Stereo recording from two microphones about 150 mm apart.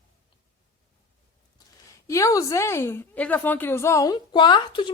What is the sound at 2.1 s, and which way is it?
A woman's voice, 20° left (ahead or behind).